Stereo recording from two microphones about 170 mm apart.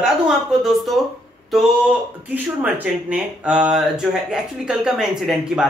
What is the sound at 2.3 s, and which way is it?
Speech, 10° right (ahead or behind).